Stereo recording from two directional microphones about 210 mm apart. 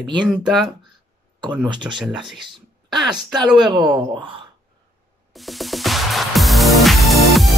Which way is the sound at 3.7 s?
20° right (ahead or behind).